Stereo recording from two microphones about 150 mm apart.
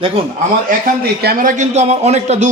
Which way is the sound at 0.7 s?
90° right.